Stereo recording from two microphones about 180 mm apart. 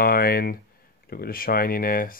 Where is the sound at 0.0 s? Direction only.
55° left (ahead or behind).